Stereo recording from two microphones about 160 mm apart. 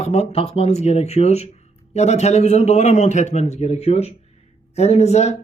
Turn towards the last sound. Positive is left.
turn(degrees=45)  # may be behind; listen again after turning